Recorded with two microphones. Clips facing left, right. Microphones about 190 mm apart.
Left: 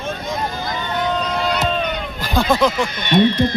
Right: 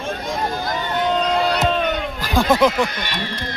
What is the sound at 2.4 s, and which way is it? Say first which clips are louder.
Speech: right 1 dB; 5° right (ahead or behind).